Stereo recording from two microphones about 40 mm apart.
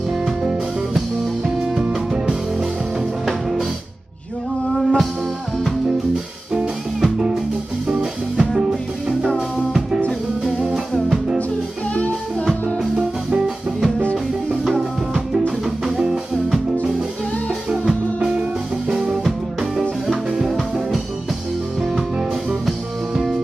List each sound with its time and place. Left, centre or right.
0.2 s music: centre
4.7 s music: centre
7.0 s music: centre
10.4 s music: centre
15.6 s music: centre
18.9 s music: right
20.4 s music: centre
22.7 s music: centre